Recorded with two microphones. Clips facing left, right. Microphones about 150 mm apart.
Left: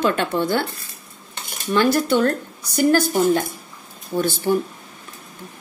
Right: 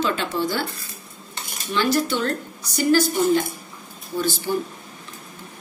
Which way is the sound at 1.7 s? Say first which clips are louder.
Left 4 dB; 50° left (ahead or behind).